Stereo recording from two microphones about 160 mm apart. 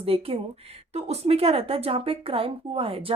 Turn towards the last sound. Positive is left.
turn(degrees=-35)  # may be behind; listen again after turning